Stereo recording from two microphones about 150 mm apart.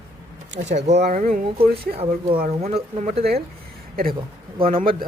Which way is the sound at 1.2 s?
65° right (ahead or behind).